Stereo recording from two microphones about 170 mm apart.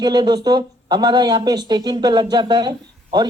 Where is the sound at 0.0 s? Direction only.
25° right (ahead or behind).